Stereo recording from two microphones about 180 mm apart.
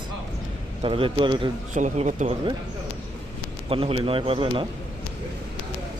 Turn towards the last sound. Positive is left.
turn(degrees=-30)  # may be behind; listen again after turning